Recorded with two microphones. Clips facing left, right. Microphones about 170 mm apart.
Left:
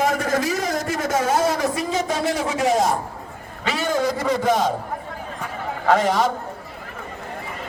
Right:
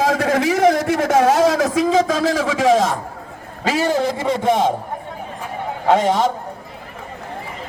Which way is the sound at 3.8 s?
30° right (ahead or behind).